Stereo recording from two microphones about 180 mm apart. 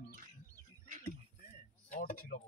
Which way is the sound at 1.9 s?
50° left (ahead or behind).